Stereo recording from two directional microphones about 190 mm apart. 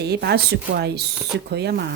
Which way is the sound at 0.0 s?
60° right (ahead or behind).